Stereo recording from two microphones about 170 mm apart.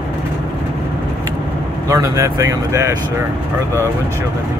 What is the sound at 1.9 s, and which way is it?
Speech, 20° right (ahead or behind).